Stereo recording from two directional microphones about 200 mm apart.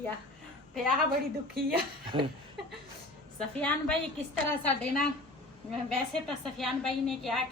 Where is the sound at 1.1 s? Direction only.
50° right (ahead or behind).